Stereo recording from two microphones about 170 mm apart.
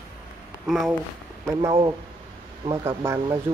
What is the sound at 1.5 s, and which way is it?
Speech, 15° right (ahead or behind).